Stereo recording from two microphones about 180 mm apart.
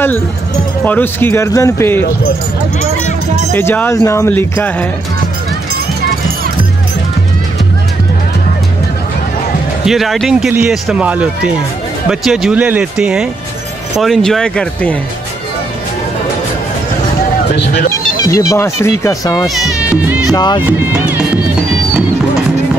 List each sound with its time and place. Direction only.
0.8 s speech: 10° left (ahead or behind)
3.5 s speech: 10° left (ahead or behind)
9.8 s speech: centre (ahead or behind)
17.6 s speech: 70° left (ahead or behind)
18.2 s speech: 20° left (ahead or behind)
19.6 s speech: 5° right (ahead or behind)
20.2 s speech: 25° left (ahead or behind)
20.9 s music: 10° right (ahead or behind)